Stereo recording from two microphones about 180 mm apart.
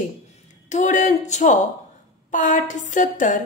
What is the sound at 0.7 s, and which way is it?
A woman's voice, 40° left (ahead or behind).